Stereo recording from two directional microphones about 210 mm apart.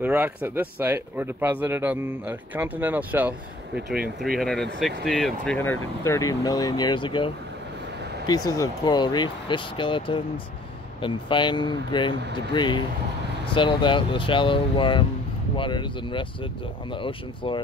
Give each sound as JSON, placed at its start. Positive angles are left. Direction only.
{"t": 0.0, "sound": "speech", "side_deg": -10}
{"t": 8.3, "sound": "speech", "side_deg": 15}